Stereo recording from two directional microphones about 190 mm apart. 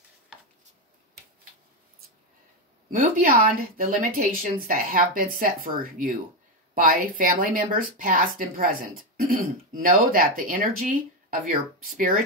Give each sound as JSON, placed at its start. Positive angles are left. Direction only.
{"t": 2.9, "sound": "speech", "side_deg": -45}